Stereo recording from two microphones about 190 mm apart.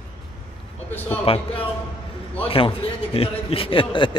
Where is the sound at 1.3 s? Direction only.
30° left (ahead or behind).